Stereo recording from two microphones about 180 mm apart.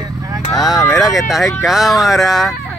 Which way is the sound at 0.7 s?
15° left (ahead or behind).